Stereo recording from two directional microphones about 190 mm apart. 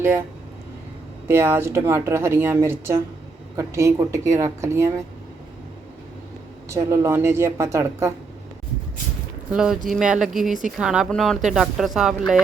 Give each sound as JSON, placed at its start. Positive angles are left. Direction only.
{"t": 1.3, "sound": "speech", "side_deg": -10}
{"t": 6.7, "sound": "speech", "side_deg": -15}
{"t": 9.5, "sound": "speech", "side_deg": -5}